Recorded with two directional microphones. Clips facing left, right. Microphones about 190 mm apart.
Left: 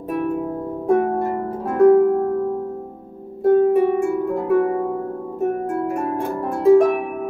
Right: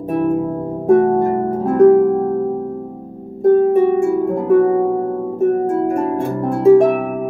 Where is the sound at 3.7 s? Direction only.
25° right (ahead or behind).